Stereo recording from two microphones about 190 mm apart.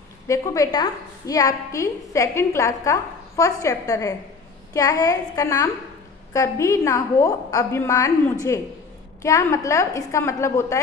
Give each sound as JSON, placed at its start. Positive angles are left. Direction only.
{"t": 0.3, "sound": "a woman's voice", "side_deg": 15}